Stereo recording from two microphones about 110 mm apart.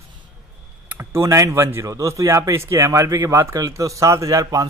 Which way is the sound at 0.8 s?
25° right (ahead or behind).